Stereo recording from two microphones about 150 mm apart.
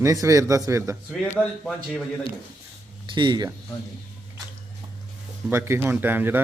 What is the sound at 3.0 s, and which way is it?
Speech, 30° right (ahead or behind).